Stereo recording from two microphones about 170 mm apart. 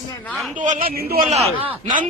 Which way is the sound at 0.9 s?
60° right (ahead or behind).